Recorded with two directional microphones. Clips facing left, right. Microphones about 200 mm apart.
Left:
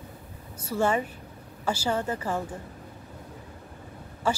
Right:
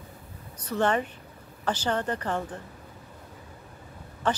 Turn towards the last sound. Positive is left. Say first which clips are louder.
# even
turn(degrees=10)  # may be behind; listen again after turning